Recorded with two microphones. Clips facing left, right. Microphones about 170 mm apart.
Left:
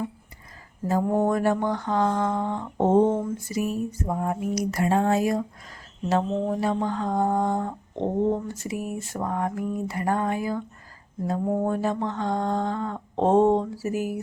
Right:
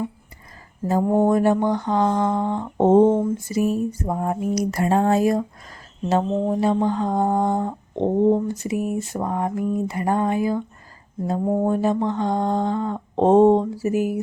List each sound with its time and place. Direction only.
0.9 s mantra: 25° right (ahead or behind)
6.1 s mantra: 25° right (ahead or behind)